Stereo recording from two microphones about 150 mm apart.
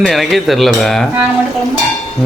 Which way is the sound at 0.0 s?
Centre (ahead or behind).